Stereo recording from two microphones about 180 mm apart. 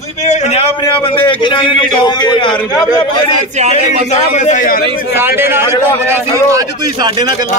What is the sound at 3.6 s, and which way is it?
Speech, 40° right (ahead or behind).